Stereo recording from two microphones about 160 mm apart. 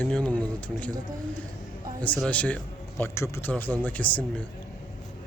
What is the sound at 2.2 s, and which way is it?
A man's voice, 10° left (ahead or behind).